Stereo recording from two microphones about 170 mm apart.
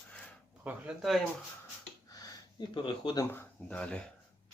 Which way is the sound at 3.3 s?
10° left (ahead or behind).